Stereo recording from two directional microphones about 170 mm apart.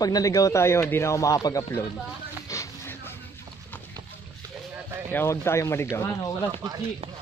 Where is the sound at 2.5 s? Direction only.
15° left (ahead or behind).